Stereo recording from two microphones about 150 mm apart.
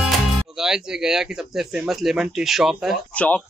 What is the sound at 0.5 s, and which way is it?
Speech, 5° right (ahead or behind).